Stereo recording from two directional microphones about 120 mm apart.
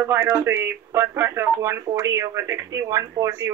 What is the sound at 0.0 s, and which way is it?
Speech, 20° right (ahead or behind).